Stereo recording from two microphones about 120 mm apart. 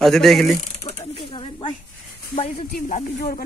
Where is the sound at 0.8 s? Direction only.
50° left (ahead or behind).